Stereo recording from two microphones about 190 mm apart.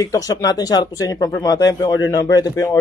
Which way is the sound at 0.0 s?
20° left (ahead or behind).